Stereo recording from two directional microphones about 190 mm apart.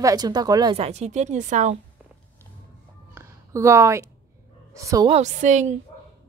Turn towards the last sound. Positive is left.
turn(degrees=-40)  # may be behind; listen again after turning